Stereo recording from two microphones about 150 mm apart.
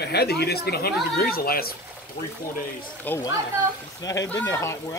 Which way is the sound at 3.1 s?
10° left (ahead or behind).